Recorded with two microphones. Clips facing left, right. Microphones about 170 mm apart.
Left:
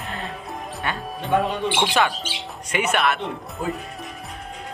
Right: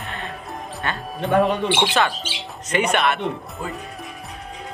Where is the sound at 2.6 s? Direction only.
5° left (ahead or behind).